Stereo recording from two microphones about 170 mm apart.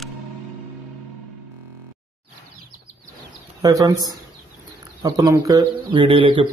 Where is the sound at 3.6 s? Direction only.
20° right (ahead or behind).